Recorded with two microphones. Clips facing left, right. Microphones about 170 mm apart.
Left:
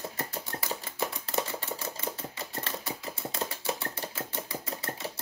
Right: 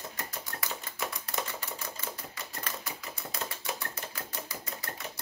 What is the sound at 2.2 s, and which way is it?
Typewriter, 25° left (ahead or behind).